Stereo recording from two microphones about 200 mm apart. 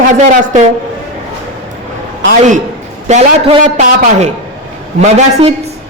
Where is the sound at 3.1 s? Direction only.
30° right (ahead or behind).